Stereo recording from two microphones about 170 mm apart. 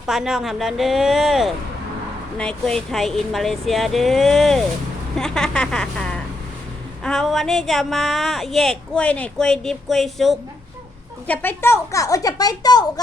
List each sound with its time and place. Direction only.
0.0 s speech: 5° right (ahead or behind)
11.3 s a woman's voice: 10° left (ahead or behind)